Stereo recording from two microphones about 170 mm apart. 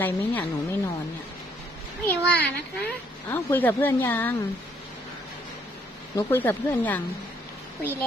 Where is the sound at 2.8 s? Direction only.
10° left (ahead or behind).